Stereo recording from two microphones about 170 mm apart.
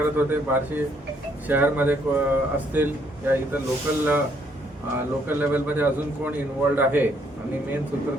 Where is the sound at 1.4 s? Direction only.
10° right (ahead or behind).